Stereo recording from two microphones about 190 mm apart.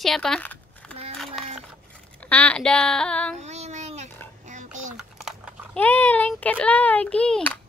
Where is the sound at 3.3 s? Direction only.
35° right (ahead or behind).